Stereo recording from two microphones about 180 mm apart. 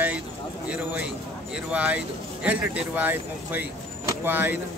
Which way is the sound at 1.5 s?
5° right (ahead or behind).